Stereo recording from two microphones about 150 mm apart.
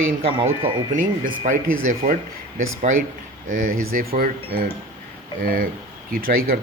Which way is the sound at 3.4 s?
60° right (ahead or behind).